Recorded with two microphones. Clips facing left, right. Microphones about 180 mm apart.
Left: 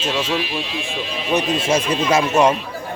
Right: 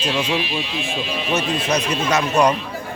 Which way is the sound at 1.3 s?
20° left (ahead or behind).